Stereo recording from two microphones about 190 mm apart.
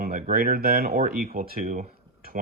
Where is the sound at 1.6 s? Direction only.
50° right (ahead or behind).